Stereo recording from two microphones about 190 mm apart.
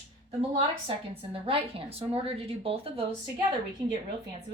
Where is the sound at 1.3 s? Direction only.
30° right (ahead or behind).